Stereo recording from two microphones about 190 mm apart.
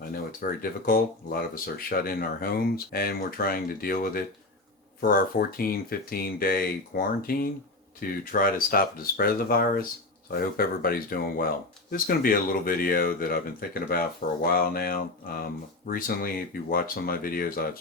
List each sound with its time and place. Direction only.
0.1 s speech: 50° left (ahead or behind)